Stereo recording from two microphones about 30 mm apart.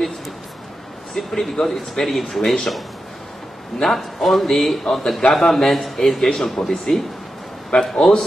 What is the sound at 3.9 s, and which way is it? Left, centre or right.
A man's voice, centre.